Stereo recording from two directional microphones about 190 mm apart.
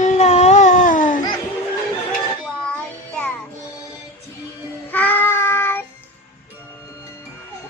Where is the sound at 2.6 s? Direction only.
5° left (ahead or behind).